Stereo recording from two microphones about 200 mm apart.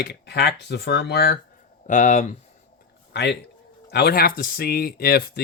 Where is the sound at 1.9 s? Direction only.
40° left (ahead or behind).